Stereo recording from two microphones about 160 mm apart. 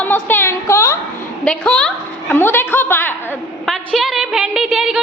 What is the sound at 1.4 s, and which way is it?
A woman's voice, 5° left (ahead or behind).